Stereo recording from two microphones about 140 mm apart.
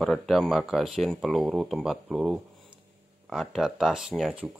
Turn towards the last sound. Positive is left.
turn(degrees=-5)  # may be behind; listen again after turning